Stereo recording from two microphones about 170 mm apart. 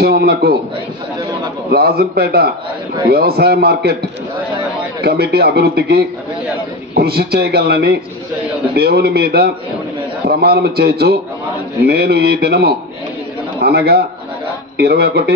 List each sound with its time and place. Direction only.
0.0 s a man's voice: 70° right (ahead or behind)
1.7 s a man's voice: 65° right (ahead or behind)
5.0 s a man's voice: 70° right (ahead or behind)